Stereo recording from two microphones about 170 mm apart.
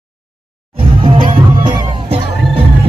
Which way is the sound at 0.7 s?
30° right (ahead or behind).